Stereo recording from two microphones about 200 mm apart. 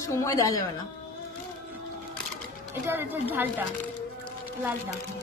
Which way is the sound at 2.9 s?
10° right (ahead or behind).